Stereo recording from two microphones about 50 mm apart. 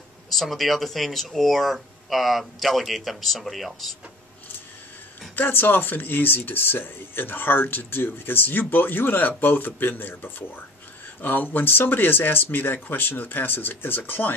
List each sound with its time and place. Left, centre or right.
0.3 s speech: centre
5.3 s speech: left